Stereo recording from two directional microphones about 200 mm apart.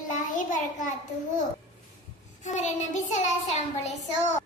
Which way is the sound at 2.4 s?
35° left (ahead or behind).